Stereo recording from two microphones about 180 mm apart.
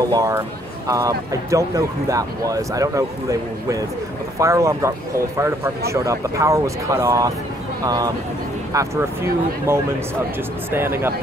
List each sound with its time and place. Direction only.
0.0 s speech: 20° right (ahead or behind)